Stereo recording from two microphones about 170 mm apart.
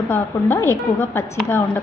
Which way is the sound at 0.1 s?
15° left (ahead or behind).